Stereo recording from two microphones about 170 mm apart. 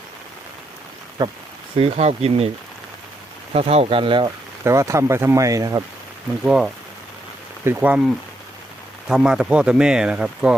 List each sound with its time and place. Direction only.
1.2 s speech: 25° right (ahead or behind)
1.7 s speech: 35° right (ahead or behind)
3.5 s speech: 35° right (ahead or behind)
4.6 s speech: 20° right (ahead or behind)
6.4 s speech: 5° right (ahead or behind)
9.0 s speech: 5° right (ahead or behind)